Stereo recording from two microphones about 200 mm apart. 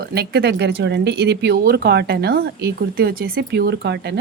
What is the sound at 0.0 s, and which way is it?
Speech, 55° right (ahead or behind).